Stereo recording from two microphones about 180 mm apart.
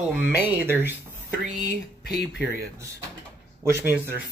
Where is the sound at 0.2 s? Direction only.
5° right (ahead or behind).